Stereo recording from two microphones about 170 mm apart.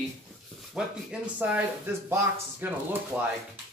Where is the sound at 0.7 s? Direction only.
10° right (ahead or behind).